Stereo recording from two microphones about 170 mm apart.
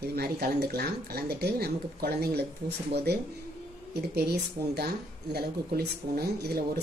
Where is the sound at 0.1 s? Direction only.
70° right (ahead or behind).